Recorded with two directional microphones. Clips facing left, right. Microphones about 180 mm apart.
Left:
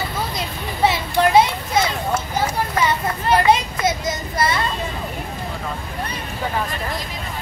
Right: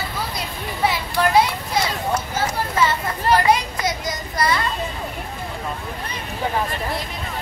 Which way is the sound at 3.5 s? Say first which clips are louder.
Left 2 dB; 25° left (ahead or behind).